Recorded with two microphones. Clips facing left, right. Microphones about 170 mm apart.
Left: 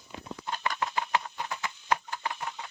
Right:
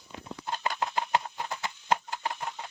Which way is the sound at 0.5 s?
30° right (ahead or behind).